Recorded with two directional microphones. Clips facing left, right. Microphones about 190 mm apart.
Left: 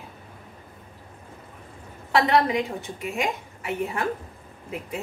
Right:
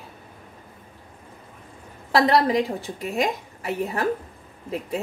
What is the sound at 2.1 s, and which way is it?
A woman's voice, 35° right (ahead or behind).